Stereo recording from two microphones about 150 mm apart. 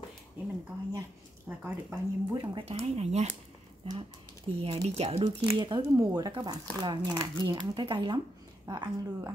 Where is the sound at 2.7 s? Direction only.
45° right (ahead or behind).